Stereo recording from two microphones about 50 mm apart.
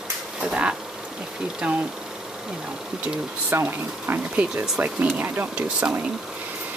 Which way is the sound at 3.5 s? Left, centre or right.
Right.